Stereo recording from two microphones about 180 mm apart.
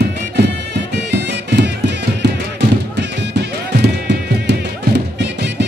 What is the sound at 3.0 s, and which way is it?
Music, 70° right (ahead or behind).